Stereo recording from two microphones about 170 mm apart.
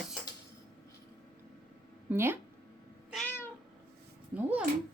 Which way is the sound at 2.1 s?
15° right (ahead or behind).